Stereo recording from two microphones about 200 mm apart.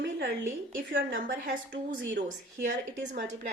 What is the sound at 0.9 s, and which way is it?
A woman's voice, 45° right (ahead or behind).